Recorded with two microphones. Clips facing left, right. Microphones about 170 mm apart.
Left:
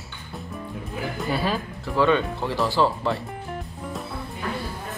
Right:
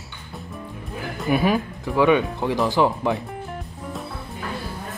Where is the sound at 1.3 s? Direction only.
15° right (ahead or behind).